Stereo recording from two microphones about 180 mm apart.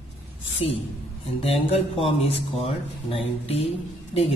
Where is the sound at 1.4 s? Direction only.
30° left (ahead or behind).